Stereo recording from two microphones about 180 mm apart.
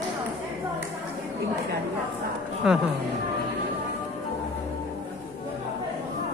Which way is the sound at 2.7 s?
5° right (ahead or behind).